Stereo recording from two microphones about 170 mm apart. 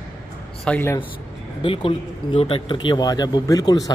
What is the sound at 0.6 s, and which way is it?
Speech, 5° left (ahead or behind).